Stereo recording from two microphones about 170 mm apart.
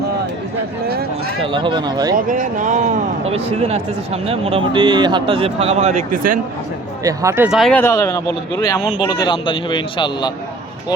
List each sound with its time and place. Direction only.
1.4 s speech: 30° right (ahead or behind)
2.1 s speech: 50° right (ahead or behind)
7.0 s speech: 20° right (ahead or behind)
7.5 s speech: centre (ahead or behind)
7.8 s speech: 15° left (ahead or behind)